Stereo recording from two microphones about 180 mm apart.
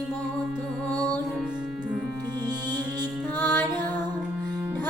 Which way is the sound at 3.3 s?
10° left (ahead or behind).